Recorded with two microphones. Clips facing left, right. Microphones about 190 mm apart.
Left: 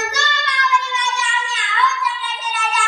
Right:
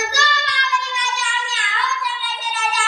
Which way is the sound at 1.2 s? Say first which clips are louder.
Left 2 dB; 35° right (ahead or behind).